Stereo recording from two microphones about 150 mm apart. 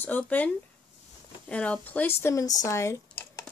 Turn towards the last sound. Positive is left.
turn(degrees=20)  # may be behind; listen again after turning